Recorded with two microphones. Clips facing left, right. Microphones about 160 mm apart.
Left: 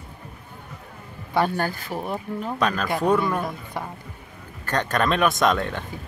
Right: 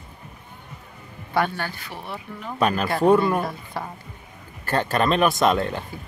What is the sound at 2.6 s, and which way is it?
Speech, 10° right (ahead or behind).